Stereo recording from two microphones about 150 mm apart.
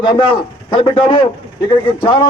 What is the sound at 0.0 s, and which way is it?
A man's voice, 30° left (ahead or behind).